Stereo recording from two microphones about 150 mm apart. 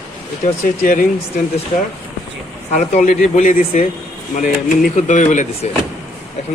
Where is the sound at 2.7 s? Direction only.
55° left (ahead or behind).